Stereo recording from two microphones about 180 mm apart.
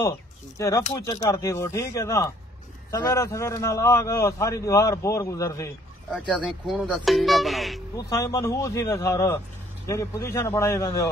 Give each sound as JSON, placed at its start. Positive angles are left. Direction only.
{"t": 0.6, "sound": "a man's voice", "side_deg": 15}
{"t": 6.2, "sound": "speech", "side_deg": 0}
{"t": 7.9, "sound": "a man's voice", "side_deg": 20}